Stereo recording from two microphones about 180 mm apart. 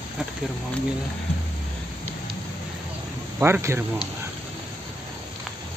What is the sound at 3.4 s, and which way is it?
Speech, 15° right (ahead or behind).